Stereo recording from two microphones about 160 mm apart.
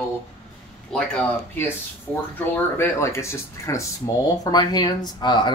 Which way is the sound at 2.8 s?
15° left (ahead or behind).